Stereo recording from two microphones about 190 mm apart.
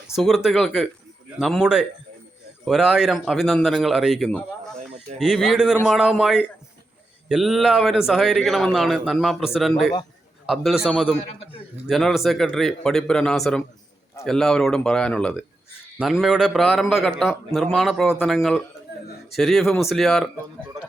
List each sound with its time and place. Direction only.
0.2 s a man's voice: centre (ahead or behind)
11.3 s a man's voice: 30° left (ahead or behind)
11.9 s a man's voice: centre (ahead or behind)